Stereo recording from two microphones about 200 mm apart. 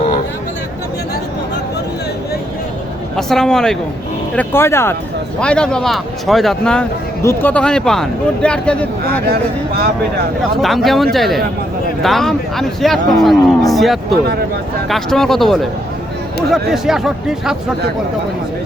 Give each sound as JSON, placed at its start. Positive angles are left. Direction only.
{"t": 3.2, "sound": "speech", "side_deg": 0}
{"t": 9.2, "sound": "speech", "side_deg": -50}
{"t": 10.6, "sound": "speech", "side_deg": 0}
{"t": 16.7, "sound": "speech", "side_deg": 0}